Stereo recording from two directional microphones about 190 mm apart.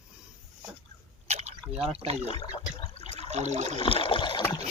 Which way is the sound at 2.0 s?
35° right (ahead or behind).